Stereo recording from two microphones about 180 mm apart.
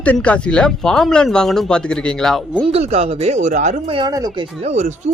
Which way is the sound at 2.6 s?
35° right (ahead or behind).